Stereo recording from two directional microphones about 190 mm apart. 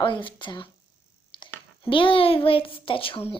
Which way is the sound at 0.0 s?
25° left (ahead or behind).